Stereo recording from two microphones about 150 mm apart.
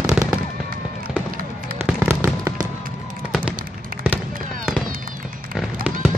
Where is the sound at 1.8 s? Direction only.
15° right (ahead or behind).